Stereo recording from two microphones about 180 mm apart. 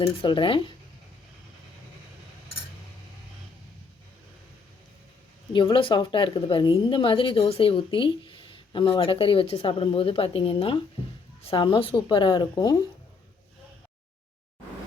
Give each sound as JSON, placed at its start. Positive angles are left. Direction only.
{"t": 0.0, "sound": "a woman's voice", "side_deg": 30}
{"t": 5.5, "sound": "a woman's voice", "side_deg": 30}